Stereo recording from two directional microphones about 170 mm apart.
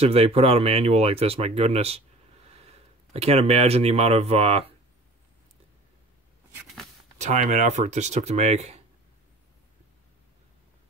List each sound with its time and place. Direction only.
0.0 s speech: 35° right (ahead or behind)
6.6 s a sound: centre (ahead or behind)
7.2 s speech: 45° right (ahead or behind)